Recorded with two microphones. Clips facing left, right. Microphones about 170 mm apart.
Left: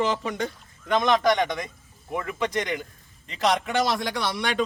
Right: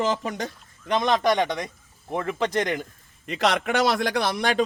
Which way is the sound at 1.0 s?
30° right (ahead or behind).